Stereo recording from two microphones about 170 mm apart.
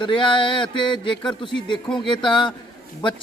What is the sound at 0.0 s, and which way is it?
A man's voice, 30° left (ahead or behind).